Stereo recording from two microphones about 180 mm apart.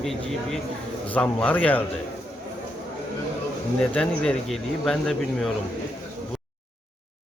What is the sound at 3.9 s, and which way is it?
A man's voice, 5° left (ahead or behind).